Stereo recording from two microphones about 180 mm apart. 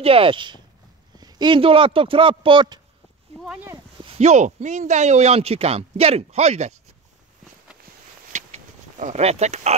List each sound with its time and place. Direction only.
0.0 s speech: 30° right (ahead or behind)
3.3 s speech: 5° right (ahead or behind)
4.0 s speech: 35° right (ahead or behind)
8.3 s a sound: 45° right (ahead or behind)